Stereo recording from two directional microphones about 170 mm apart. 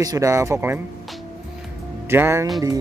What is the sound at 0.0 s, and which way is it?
Speech, 20° right (ahead or behind).